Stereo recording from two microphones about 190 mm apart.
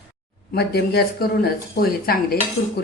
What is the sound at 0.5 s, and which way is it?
Speech, 55° left (ahead or behind).